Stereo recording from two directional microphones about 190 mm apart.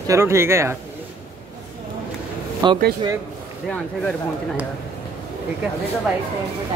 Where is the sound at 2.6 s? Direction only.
20° right (ahead or behind).